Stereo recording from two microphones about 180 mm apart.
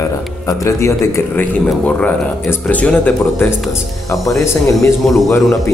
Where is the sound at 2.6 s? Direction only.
10° left (ahead or behind).